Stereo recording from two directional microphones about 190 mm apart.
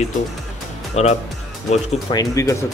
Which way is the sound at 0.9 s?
35° left (ahead or behind).